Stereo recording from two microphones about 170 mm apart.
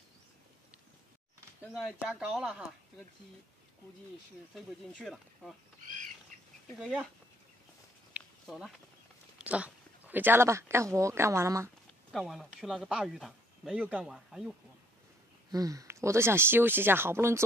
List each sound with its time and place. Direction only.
1.7 s speech: 5° right (ahead or behind)
4.6 s speech: centre (ahead or behind)
6.7 s speech: 5° right (ahead or behind)
8.2 s a sound: 10° right (ahead or behind)
8.5 s speech: 5° right (ahead or behind)
12.1 s speech: centre (ahead or behind)
15.5 s speech: 20° right (ahead or behind)